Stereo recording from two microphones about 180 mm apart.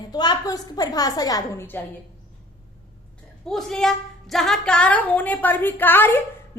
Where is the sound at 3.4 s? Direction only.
Centre (ahead or behind).